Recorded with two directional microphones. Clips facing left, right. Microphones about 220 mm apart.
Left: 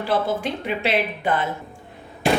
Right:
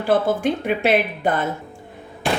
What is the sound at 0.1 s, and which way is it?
A woman's voice, 50° right (ahead or behind).